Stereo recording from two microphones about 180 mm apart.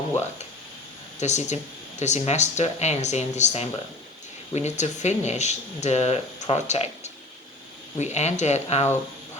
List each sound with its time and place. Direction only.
1.2 s speech: 40° left (ahead or behind)